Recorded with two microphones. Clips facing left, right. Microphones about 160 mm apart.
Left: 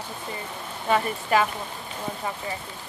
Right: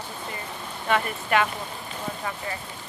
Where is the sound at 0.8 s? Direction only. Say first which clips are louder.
Left 1 dB; 25° left (ahead or behind).